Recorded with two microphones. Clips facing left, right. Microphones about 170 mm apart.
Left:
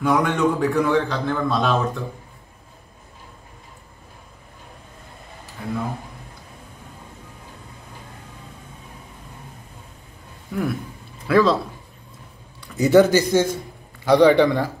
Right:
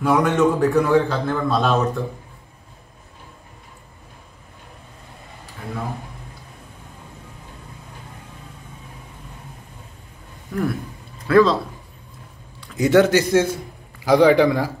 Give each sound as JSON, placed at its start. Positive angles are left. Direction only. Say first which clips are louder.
{"t": 0.0, "sound": "a man's voice", "louder": "right 2 dB", "side_deg": -5}
{"t": 10.5, "sound": "a man's voice", "louder": "right 1 dB", "side_deg": 0}
{"t": 12.5, "sound": "a man's voice", "louder": "left 1 dB", "side_deg": 0}